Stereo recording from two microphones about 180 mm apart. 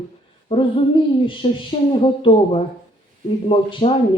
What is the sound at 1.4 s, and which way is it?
Speech, 35° left (ahead or behind).